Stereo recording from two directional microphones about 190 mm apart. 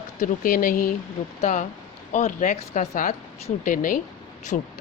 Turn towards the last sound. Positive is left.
turn(degrees=40)  # may be behind; listen again after turning